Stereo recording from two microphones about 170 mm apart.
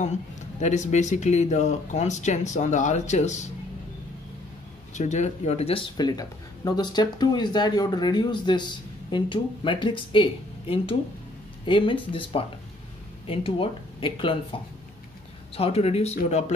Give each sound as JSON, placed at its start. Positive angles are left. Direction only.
{"t": 0.0, "sound": "speech", "side_deg": 45}
{"t": 4.9, "sound": "speech", "side_deg": 45}